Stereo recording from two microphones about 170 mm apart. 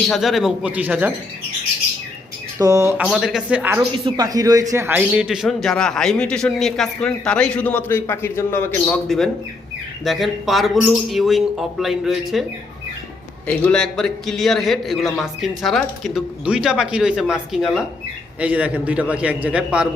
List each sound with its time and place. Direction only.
0.1 s a man's voice: centre (ahead or behind)
2.6 s speech: 20° right (ahead or behind)
3.0 s a man's voice: centre (ahead or behind)
3.9 s a man's voice: 25° right (ahead or behind); by 9.0 s 15° left (ahead or behind)
9.0 s a man's voice: centre (ahead or behind)
13.5 s a man's voice: 5° left (ahead or behind)